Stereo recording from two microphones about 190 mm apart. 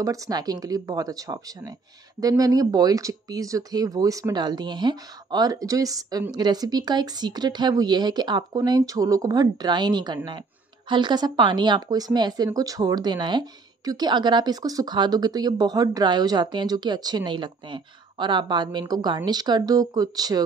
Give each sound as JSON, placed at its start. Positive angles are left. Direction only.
{"t": 0.0, "sound": "speech", "side_deg": -15}